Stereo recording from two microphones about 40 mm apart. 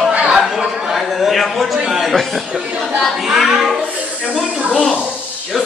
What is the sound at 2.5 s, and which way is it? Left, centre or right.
Speech, right.